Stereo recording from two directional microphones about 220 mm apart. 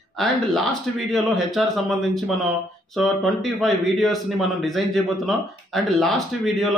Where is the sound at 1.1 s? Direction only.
Centre (ahead or behind).